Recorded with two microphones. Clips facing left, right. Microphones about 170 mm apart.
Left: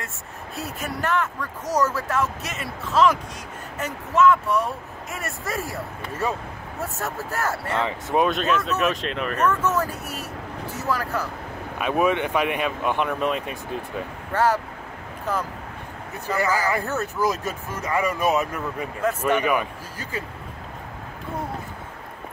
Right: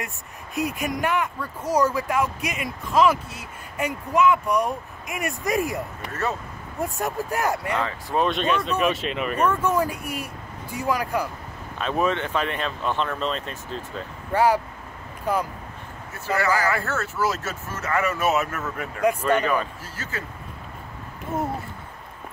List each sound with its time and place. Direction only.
0.6 s speech: 15° right (ahead or behind)
6.8 s speech: 15° right (ahead or behind)
7.8 s speech: 20° left (ahead or behind)
8.3 s speech: centre (ahead or behind)
11.8 s speech: 10° left (ahead or behind)
14.3 s speech: 10° right (ahead or behind)
16.3 s speech: 15° left (ahead or behind)